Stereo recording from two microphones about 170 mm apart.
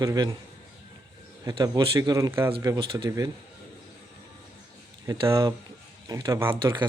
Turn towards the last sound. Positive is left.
turn(degrees=-15)  # may be behind; listen again after turning